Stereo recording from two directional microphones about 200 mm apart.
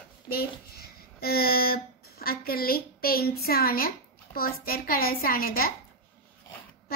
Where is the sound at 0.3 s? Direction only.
50° left (ahead or behind).